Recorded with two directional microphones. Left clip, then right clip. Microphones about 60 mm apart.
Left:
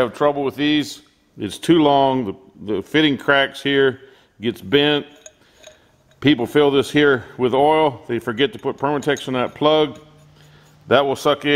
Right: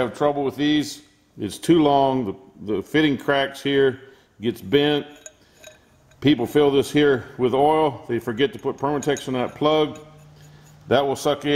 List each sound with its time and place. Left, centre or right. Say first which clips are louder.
0.0 s a man's voice: left 3 dB; left
5.1 s dishes: even; centre
6.1 s a man's voice: left 3 dB; left
10.9 s a man's voice: left 4 dB; left